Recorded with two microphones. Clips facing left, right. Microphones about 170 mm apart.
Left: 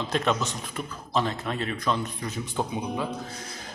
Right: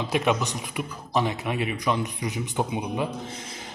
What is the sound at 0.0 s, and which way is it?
A man's voice, 15° right (ahead or behind).